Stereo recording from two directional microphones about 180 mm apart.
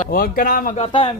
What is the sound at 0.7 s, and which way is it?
Speech, 25° left (ahead or behind).